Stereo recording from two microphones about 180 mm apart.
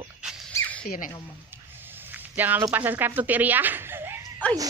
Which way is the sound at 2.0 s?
10° right (ahead or behind).